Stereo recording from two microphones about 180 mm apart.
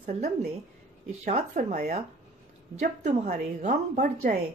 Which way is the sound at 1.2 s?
40° right (ahead or behind).